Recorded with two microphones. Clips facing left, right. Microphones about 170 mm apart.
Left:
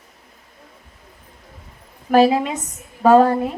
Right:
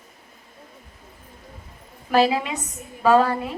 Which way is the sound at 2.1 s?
45° left (ahead or behind).